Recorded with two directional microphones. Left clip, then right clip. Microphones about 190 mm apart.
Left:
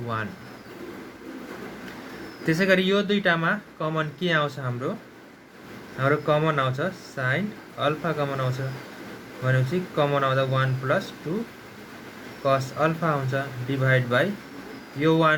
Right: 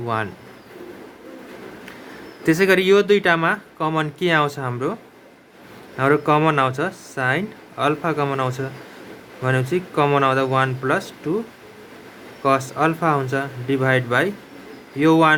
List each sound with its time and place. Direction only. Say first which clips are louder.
2.5 s speech: right 6 dB; 50° right (ahead or behind)
6.0 s speech: right 6 dB; 50° right (ahead or behind)
12.5 s speech: right 4 dB; 50° right (ahead or behind)